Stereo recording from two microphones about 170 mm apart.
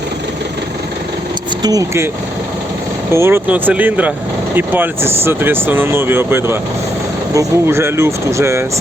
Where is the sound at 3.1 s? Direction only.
15° right (ahead or behind).